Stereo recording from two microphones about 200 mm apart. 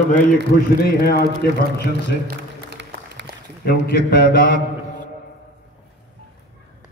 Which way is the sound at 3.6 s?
50° left (ahead or behind).